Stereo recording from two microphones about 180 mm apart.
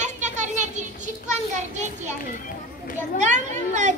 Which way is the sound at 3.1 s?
40° right (ahead or behind).